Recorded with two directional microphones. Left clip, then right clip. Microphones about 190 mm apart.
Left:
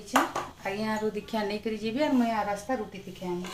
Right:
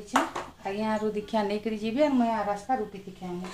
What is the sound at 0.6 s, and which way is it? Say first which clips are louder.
A woman's voice: right 2 dB; 20° right (ahead or behind).